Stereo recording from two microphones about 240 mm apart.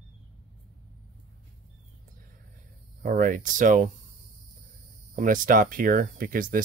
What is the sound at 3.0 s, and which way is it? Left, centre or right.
Speech, right.